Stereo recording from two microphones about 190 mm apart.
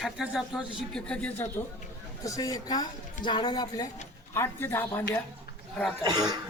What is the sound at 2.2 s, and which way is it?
A woman's voice, 20° left (ahead or behind).